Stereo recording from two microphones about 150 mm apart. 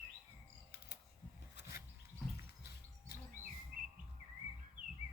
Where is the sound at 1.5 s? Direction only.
90° left.